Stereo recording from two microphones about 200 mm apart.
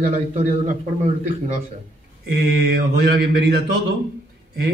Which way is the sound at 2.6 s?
55° right (ahead or behind).